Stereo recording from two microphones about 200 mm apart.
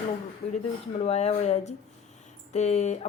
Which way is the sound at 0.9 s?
30° left (ahead or behind).